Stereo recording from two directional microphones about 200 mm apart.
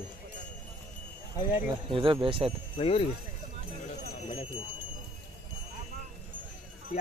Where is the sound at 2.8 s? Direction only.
30° left (ahead or behind).